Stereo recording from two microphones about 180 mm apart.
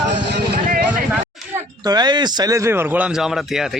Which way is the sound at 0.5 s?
55° right (ahead or behind).